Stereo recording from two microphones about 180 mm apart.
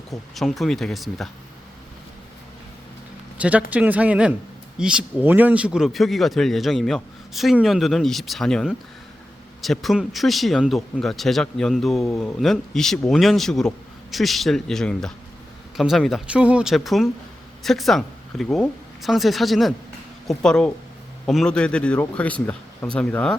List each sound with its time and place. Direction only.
0.3 s speech: centre (ahead or behind)
3.3 s a man's voice: 5° right (ahead or behind)